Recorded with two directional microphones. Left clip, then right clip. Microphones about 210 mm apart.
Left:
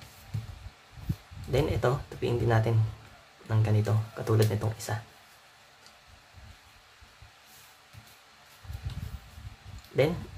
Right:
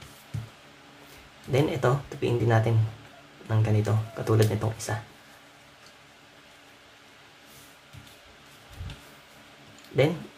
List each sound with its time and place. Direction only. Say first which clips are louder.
1.5 s speech: right 3 dB; centre (ahead or behind)
9.9 s speech: right 2 dB; 5° left (ahead or behind)